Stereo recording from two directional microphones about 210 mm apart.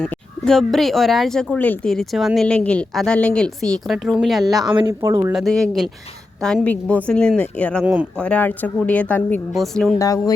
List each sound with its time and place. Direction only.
0.0 s speech: centre (ahead or behind)
4.4 s speech: 20° right (ahead or behind)
5.3 s speech: centre (ahead or behind)
10.0 s speech: 15° left (ahead or behind)